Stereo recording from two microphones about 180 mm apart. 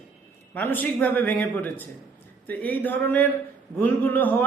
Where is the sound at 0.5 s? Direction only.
10° left (ahead or behind).